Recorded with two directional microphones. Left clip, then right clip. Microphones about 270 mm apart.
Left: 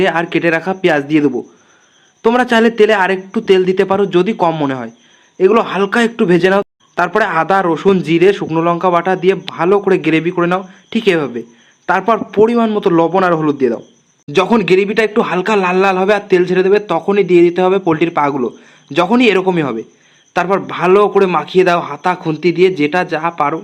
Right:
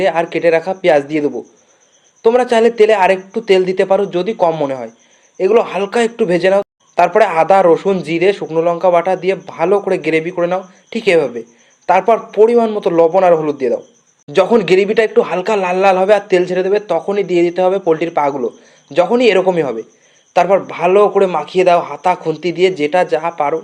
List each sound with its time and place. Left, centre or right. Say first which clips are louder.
0.0 s a man's voice: even; centre